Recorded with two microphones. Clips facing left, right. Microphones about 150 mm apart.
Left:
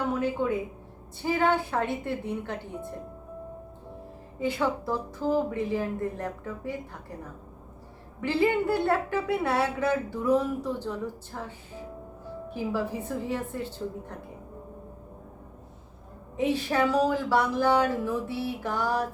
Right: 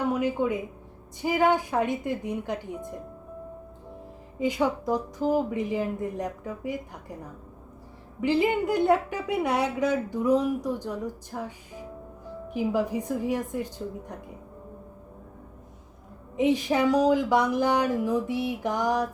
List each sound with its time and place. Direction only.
0.1 s a woman's voice: 15° right (ahead or behind)
4.4 s a woman's voice: 15° right (ahead or behind)
8.2 s a woman's voice: 15° right (ahead or behind)
16.4 s a woman's voice: 15° right (ahead or behind)